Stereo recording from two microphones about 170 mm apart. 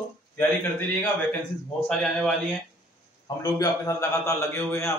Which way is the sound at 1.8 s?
Centre (ahead or behind).